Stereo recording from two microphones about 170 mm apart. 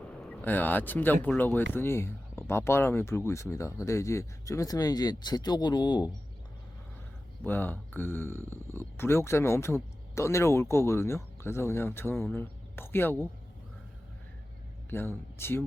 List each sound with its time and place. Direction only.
0.3 s speech: 10° left (ahead or behind)
7.4 s speech: 10° left (ahead or behind)
14.8 s speech: 15° left (ahead or behind)